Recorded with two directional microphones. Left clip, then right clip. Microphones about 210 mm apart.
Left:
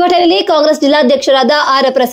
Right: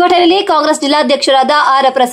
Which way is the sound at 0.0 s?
10° left (ahead or behind).